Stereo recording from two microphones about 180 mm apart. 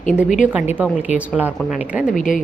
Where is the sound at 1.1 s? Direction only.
10° right (ahead or behind).